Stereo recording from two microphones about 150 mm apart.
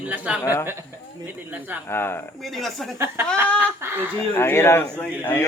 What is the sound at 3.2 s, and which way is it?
Speech, 15° right (ahead or behind).